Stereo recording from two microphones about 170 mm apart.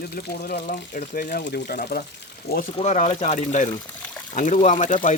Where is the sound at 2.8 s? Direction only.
40° left (ahead or behind).